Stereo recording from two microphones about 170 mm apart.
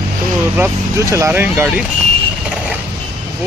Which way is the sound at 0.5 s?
15° right (ahead or behind).